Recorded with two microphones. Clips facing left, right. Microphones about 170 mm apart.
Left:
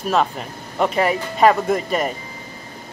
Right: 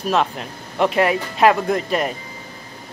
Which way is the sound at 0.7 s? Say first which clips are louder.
Right 1 dB; centre (ahead or behind).